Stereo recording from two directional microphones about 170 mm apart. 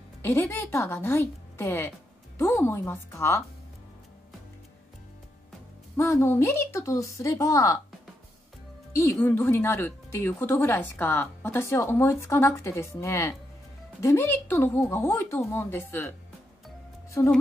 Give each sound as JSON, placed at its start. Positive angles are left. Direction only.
{"t": 0.2, "sound": "speech", "side_deg": 15}
{"t": 5.9, "sound": "speech", "side_deg": 15}
{"t": 8.9, "sound": "speech", "side_deg": 15}